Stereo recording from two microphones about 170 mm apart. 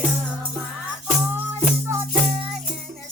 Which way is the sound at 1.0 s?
10° right (ahead or behind).